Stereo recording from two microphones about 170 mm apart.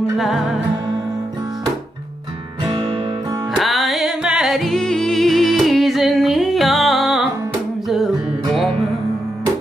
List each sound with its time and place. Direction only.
0.2 s music: centre (ahead or behind)
2.6 s music: 30° right (ahead or behind)
3.5 s music: centre (ahead or behind)